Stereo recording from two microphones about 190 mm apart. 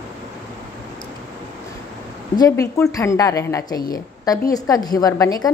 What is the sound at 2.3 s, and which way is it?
A woman's voice, 20° left (ahead or behind).